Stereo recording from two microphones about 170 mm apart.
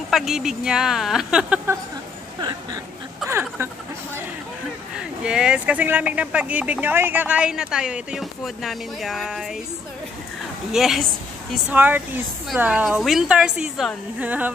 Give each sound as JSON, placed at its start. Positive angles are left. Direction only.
{"t": 0.1, "sound": "a woman's voice", "side_deg": 0}
{"t": 3.3, "sound": "a sound", "side_deg": -15}
{"t": 4.9, "sound": "speech", "side_deg": -5}
{"t": 10.7, "sound": "a woman's voice", "side_deg": 0}